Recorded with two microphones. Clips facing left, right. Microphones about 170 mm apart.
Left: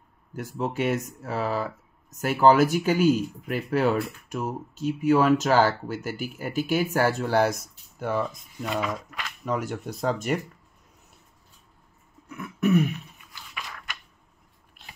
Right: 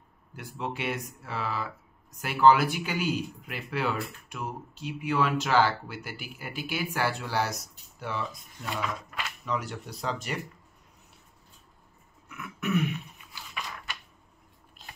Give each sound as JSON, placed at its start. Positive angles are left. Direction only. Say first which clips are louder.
{"t": 0.3, "sound": "speech", "louder": "left 6 dB", "side_deg": 45}
{"t": 12.3, "sound": "throat clearing", "louder": "left 8 dB", "side_deg": 35}